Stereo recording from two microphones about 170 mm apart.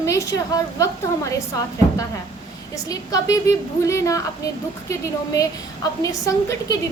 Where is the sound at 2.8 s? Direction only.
20° left (ahead or behind).